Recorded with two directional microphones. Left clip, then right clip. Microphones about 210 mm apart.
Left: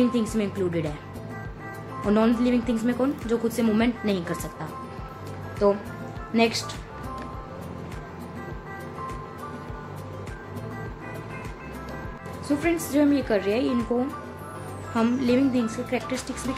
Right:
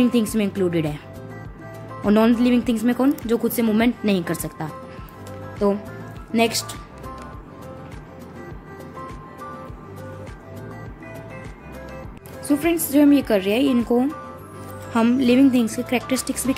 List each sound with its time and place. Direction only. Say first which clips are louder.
0.0 s a woman's voice: right 4 dB; 45° right (ahead or behind)
2.0 s a woman's voice: right 5 dB; 45° right (ahead or behind)
12.4 s a woman's voice: right 4 dB; 40° right (ahead or behind)
15.0 s a woman's voice: right 6 dB; 45° right (ahead or behind)